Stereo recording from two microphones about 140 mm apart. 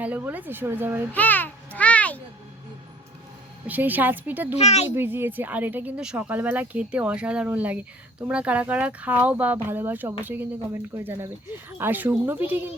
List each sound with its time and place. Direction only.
0.0 s speech: 10° right (ahead or behind)
1.1 s a child's voice: 10° left (ahead or behind)
3.7 s speech: 10° right (ahead or behind)
4.5 s a child's voice: 50° left (ahead or behind)
4.9 s speech: 15° right (ahead or behind)